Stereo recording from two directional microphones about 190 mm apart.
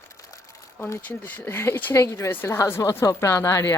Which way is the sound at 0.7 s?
15° left (ahead or behind).